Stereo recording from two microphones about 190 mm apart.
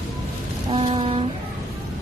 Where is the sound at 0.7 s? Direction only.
25° right (ahead or behind).